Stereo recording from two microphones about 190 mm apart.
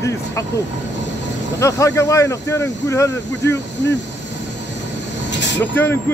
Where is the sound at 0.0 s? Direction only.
15° left (ahead or behind).